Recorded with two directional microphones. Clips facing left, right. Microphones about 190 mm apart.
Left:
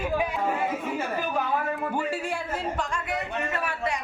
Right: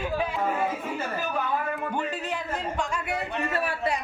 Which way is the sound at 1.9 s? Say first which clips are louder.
Left 1 dB; 10° left (ahead or behind).